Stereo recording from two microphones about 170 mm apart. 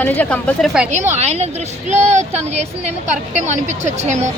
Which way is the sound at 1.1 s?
40° right (ahead or behind).